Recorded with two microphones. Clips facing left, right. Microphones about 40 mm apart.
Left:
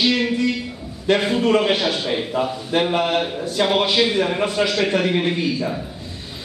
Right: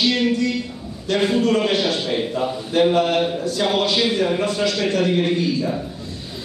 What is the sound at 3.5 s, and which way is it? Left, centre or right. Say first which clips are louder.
Speech: left 4 dB; left.